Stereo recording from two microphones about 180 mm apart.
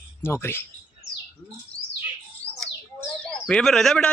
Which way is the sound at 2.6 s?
5° left (ahead or behind).